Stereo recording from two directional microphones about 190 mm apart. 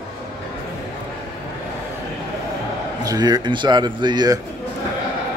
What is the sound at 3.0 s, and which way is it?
A man's voice, 20° right (ahead or behind).